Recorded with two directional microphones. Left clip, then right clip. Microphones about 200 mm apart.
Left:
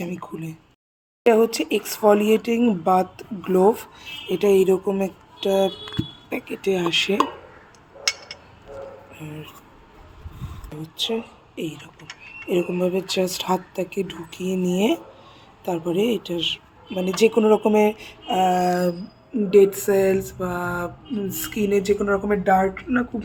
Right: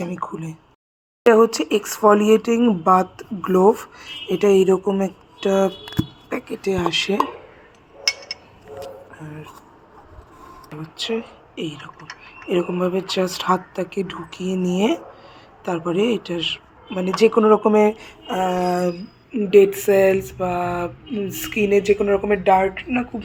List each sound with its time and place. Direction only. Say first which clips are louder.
0.0 s speech: right 4 dB; 10° right (ahead or behind)
11.0 s speech: even; centre (ahead or behind)
22.8 s speech: even; 75° right (ahead or behind)